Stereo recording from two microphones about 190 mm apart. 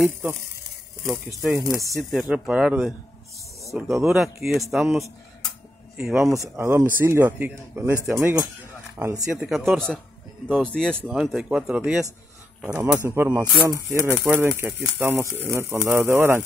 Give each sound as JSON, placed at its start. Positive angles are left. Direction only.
{"t": 0.0, "sound": "speech", "side_deg": 0}
{"t": 1.6, "sound": "speech", "side_deg": -15}
{"t": 2.0, "sound": "speech", "side_deg": -5}
{"t": 4.0, "sound": "speech", "side_deg": 0}
{"t": 6.3, "sound": "speech", "side_deg": -15}
{"t": 9.4, "sound": "speech", "side_deg": 0}